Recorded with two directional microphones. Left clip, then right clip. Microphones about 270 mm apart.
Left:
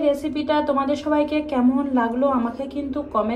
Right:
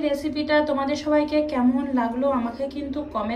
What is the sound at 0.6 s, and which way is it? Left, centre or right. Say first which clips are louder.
Speech: left 2 dB; left.